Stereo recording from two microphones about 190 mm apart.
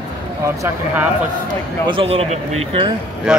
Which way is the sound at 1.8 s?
30° right (ahead or behind).